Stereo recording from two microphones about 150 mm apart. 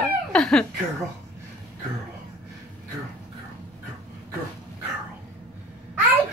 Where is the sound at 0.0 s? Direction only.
5° left (ahead or behind).